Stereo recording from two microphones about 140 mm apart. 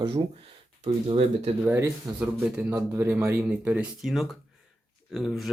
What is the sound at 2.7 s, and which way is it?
Speech, 20° right (ahead or behind).